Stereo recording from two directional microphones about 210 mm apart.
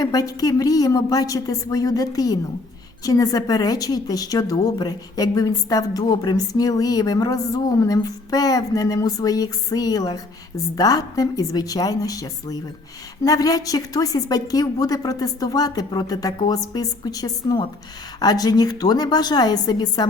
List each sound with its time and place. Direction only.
0.0 s a woman's voice: 15° left (ahead or behind)